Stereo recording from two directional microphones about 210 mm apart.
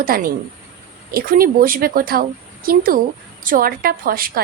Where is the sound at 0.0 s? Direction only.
45° right (ahead or behind).